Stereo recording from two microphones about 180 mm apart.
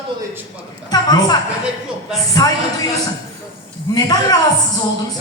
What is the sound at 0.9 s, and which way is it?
Speech, 20° left (ahead or behind).